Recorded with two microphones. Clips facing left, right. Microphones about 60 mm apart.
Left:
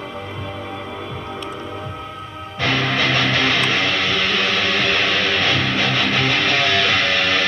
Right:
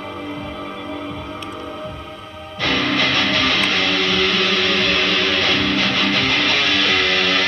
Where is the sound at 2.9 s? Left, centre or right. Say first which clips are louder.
Even; centre.